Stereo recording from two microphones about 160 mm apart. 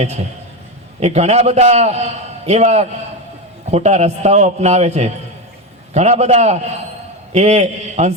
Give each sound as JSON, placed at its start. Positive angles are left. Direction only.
{"t": 0.9, "sound": "a man's voice", "side_deg": -40}